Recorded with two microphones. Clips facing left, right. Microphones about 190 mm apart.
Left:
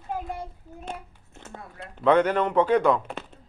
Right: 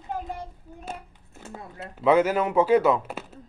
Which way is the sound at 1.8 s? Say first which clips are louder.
Even; 5° right (ahead or behind).